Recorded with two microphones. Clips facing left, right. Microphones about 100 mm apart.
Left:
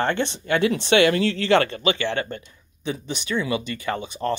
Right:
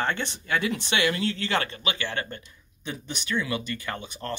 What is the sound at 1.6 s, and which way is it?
Speech, 30° left (ahead or behind).